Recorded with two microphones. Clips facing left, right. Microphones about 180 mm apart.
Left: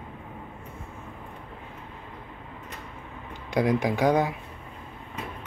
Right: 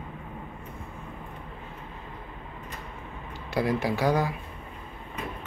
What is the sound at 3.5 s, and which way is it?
Speech, 15° left (ahead or behind).